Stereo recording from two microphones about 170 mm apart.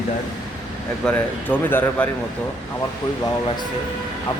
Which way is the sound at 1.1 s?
10° left (ahead or behind).